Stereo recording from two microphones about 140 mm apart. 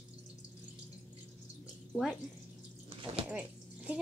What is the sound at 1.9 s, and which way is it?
Speech, centre (ahead or behind).